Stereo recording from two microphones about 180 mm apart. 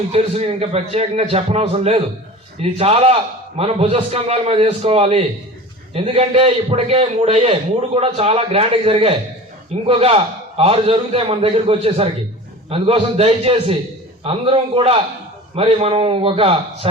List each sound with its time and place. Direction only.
0.1 s a man's voice: 35° right (ahead or behind)